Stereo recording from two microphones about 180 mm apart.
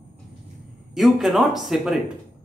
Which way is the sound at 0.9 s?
Centre (ahead or behind).